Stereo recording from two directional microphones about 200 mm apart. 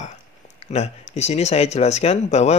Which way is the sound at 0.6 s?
35° left (ahead or behind).